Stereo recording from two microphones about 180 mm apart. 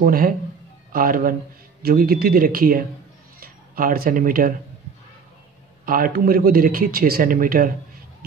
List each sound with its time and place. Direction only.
0.0 s a man's voice: 50° right (ahead or behind)
5.9 s a man's voice: 50° right (ahead or behind)